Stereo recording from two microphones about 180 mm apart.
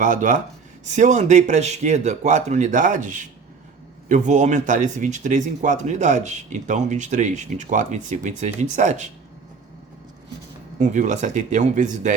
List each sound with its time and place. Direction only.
0.0 s speech: 45° right (ahead or behind)
10.8 s speech: 40° right (ahead or behind)